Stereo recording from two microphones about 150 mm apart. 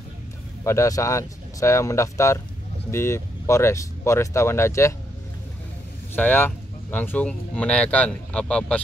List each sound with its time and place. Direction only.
0.7 s speech: 20° left (ahead or behind)
6.1 s speech: 15° left (ahead or behind)